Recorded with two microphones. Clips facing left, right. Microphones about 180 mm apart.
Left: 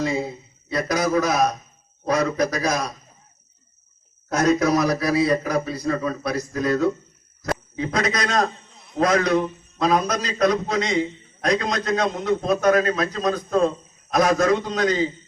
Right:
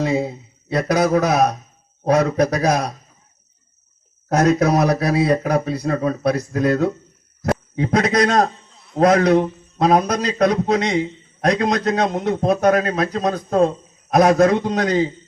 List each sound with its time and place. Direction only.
0.0 s a man's voice: 60° right (ahead or behind)
4.4 s a man's voice: 60° right (ahead or behind)
14.1 s a man's voice: 55° right (ahead or behind)